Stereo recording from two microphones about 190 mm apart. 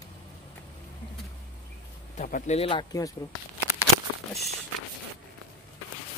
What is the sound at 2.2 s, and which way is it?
Speech, 40° left (ahead or behind).